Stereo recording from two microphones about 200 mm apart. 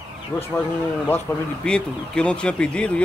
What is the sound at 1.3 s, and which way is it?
Speech, 15° left (ahead or behind).